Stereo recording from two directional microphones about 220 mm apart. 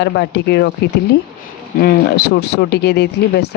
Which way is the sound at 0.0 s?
50° left (ahead or behind).